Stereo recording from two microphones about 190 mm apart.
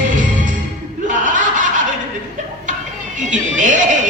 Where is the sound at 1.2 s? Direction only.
45° right (ahead or behind).